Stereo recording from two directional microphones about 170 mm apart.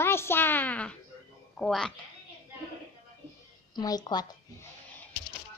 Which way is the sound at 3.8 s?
25° left (ahead or behind).